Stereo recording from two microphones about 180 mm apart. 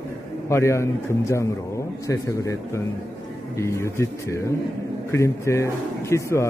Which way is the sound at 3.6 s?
15° left (ahead or behind).